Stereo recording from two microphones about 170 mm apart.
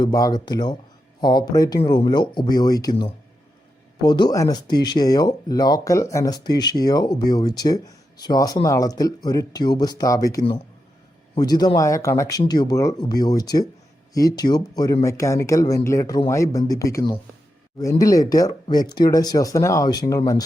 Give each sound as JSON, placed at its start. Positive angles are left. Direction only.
{"t": 0.0, "sound": "speech", "side_deg": 20}